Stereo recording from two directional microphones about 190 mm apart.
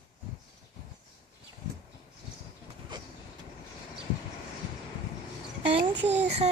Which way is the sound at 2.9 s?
25° right (ahead or behind).